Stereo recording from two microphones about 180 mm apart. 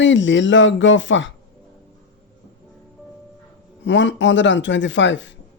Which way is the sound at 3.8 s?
90° left.